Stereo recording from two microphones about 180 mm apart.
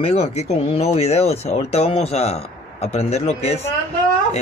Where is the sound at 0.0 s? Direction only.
35° left (ahead or behind).